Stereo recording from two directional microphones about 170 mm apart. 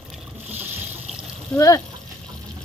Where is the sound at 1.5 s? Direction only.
20° left (ahead or behind).